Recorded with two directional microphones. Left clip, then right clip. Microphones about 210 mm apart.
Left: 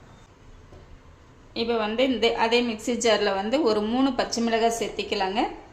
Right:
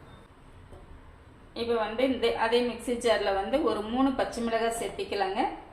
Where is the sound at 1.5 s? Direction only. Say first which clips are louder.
Left 4 dB; 55° left (ahead or behind).